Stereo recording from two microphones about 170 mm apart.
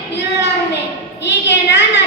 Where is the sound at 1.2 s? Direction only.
90° left.